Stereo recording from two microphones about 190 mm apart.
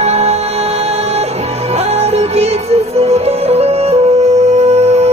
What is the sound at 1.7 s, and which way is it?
Music, 35° right (ahead or behind).